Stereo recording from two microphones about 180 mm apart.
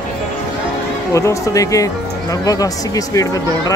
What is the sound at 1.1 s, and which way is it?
Speech, 15° left (ahead or behind).